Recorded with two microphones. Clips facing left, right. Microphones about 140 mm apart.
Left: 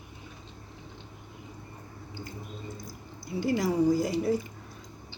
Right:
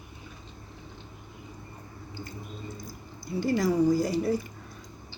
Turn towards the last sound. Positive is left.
turn(degrees=20)  # may be behind; listen again after turning